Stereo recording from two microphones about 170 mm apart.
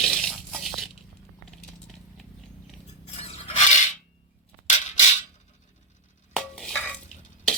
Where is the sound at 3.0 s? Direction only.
35° left (ahead or behind).